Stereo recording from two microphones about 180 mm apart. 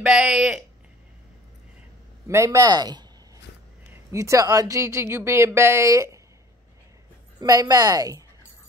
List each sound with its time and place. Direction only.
0.0 s speech: 5° right (ahead or behind)
2.2 s speech: 15° right (ahead or behind)
7.3 s speech: 20° right (ahead or behind)